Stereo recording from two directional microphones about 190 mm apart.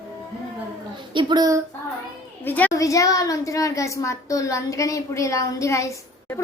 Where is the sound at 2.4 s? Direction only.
10° left (ahead or behind).